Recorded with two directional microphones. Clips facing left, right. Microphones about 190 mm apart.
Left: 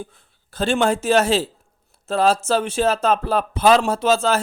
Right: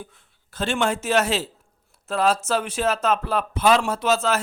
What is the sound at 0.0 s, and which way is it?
A man's voice, 35° left (ahead or behind).